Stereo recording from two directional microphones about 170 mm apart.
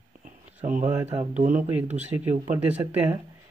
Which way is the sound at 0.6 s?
50° right (ahead or behind).